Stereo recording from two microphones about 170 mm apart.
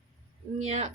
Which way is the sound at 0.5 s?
45° right (ahead or behind).